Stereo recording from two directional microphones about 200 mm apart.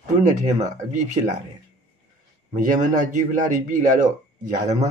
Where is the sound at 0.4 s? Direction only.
40° right (ahead or behind).